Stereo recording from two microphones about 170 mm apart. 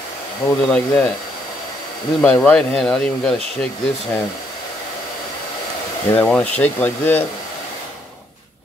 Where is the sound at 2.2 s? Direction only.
5° left (ahead or behind).